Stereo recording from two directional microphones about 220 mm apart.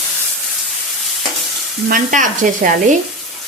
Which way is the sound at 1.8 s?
40° right (ahead or behind).